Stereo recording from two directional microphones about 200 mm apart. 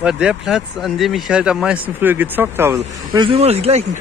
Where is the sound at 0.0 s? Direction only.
5° right (ahead or behind).